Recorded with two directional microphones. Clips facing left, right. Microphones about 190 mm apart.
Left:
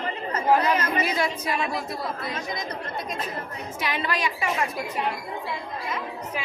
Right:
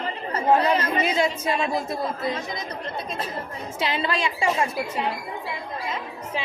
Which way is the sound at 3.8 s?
25° right (ahead or behind).